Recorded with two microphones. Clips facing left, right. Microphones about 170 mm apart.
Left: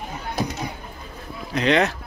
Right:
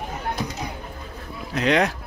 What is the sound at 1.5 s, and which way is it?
Speech, 5° right (ahead or behind).